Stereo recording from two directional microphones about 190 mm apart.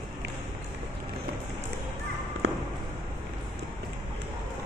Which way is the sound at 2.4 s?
60° right (ahead or behind).